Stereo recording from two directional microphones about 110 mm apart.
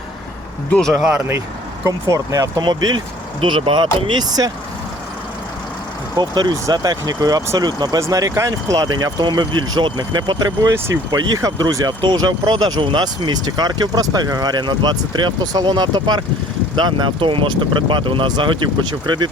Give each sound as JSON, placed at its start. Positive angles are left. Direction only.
{"t": 0.7, "sound": "speech", "side_deg": 5}
{"t": 1.9, "sound": "speech", "side_deg": -30}
{"t": 6.1, "sound": "speech", "side_deg": -40}